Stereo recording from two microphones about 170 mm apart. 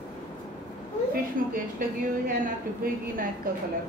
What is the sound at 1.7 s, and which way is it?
A woman's voice, 55° right (ahead or behind).